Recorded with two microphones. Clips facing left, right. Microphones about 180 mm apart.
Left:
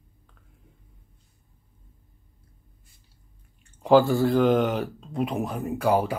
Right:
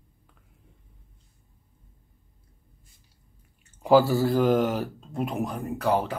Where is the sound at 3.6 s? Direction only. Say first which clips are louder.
Left 1 dB; 10° right (ahead or behind); by 6.1 s 10° left (ahead or behind).